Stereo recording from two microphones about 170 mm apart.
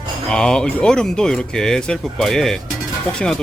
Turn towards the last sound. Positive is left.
turn(degrees=5)  # may be behind; listen again after turning